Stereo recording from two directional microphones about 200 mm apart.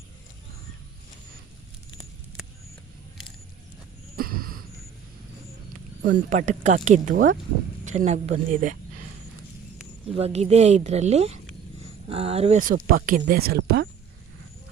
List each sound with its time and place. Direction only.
4.2 s a sound: 45° right (ahead or behind)
6.3 s speech: 35° right (ahead or behind)
10.2 s speech: 30° right (ahead or behind)
12.5 s speech: 45° right (ahead or behind)